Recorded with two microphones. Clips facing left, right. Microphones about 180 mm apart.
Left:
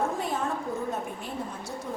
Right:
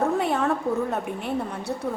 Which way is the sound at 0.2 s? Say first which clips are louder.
Right 6 dB; 65° right (ahead or behind).